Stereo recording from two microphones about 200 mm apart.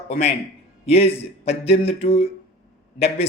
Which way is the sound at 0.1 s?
30° left (ahead or behind).